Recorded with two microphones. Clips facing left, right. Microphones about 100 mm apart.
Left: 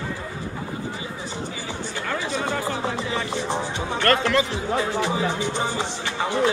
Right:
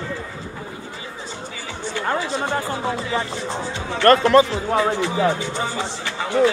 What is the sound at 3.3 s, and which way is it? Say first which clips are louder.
Speech: left 1 dB; 20° left (ahead or behind).